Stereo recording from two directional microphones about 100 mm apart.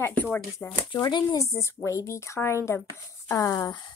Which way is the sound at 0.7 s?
40° left (ahead or behind).